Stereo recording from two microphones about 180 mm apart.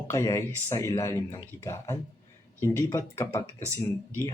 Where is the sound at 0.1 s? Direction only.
15° left (ahead or behind).